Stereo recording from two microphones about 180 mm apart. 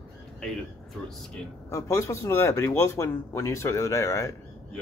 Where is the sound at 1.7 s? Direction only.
15° left (ahead or behind).